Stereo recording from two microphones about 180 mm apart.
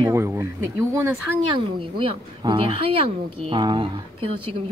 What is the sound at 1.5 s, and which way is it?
Speech, 30° right (ahead or behind).